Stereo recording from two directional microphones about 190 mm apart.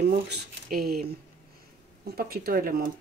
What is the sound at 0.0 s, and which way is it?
Speech, 60° right (ahead or behind).